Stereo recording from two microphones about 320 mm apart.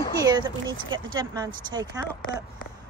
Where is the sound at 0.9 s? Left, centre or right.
Centre.